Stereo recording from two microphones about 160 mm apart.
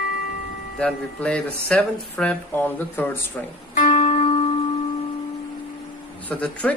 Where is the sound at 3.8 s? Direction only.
50° left (ahead or behind).